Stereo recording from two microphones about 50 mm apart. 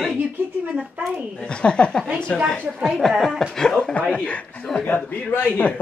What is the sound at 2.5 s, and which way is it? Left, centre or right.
Speech, centre.